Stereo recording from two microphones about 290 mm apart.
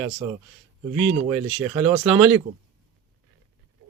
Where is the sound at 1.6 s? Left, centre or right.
Centre.